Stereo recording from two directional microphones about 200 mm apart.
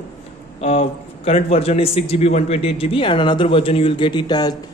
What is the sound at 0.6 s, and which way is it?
A man's voice, 30° left (ahead or behind).